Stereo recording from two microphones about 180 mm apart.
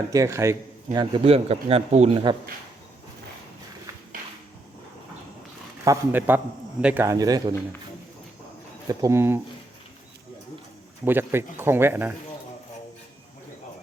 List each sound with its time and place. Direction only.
0.1 s speech: 15° right (ahead or behind)
0.9 s speech: 30° right (ahead or behind)
5.8 s speech: 15° right (ahead or behind)
8.9 s speech: 20° right (ahead or behind)
11.0 s speech: 10° right (ahead or behind)